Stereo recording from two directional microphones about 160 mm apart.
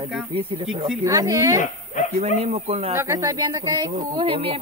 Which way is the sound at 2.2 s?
40° right (ahead or behind).